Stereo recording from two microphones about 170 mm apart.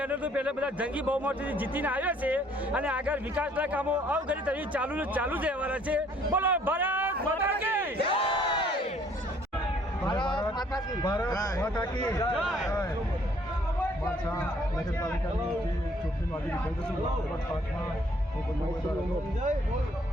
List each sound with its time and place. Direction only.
0.0 s speech: 10° right (ahead or behind)
8.1 s crowd: 30° left (ahead or behind)
10.0 s a sound: 25° left (ahead or behind)
10.6 s a man's voice: 25° left (ahead or behind)
12.4 s speech: 5° right (ahead or behind)
12.6 s speech: 15° left (ahead or behind)